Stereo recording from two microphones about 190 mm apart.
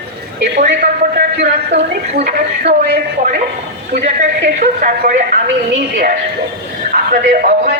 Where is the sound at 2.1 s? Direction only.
55° right (ahead or behind).